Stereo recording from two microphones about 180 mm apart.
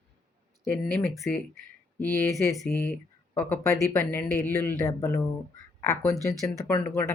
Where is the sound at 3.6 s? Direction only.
15° left (ahead or behind).